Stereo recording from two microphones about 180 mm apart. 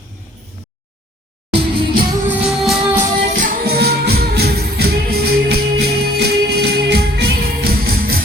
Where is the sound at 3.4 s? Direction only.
60° right (ahead or behind).